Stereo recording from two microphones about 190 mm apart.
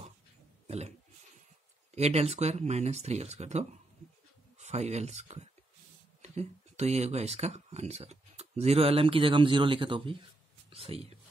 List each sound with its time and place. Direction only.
0.7 s speech: 35° right (ahead or behind)
2.0 s speech: 35° right (ahead or behind)